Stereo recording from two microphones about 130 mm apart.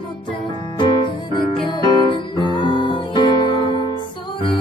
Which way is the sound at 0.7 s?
40° left (ahead or behind).